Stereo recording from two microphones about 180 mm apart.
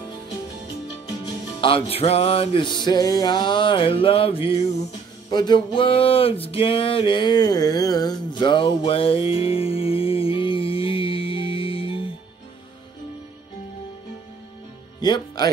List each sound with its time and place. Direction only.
1.6 s music: 30° left (ahead or behind)
5.3 s a sound: 25° left (ahead or behind)
15.0 s music: 25° left (ahead or behind)